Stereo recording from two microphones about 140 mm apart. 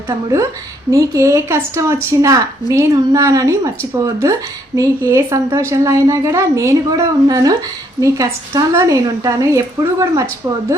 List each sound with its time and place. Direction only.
0.9 s speech: 25° right (ahead or behind)